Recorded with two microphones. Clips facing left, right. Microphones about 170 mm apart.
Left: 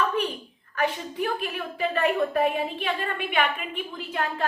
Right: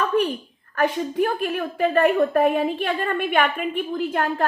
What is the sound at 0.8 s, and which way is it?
A woman's voice, 50° right (ahead or behind).